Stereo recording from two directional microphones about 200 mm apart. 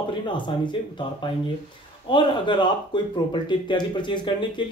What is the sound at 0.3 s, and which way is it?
Speech, 25° left (ahead or behind).